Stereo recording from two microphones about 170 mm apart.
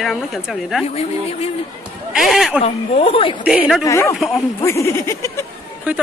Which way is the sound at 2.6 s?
35° left (ahead or behind).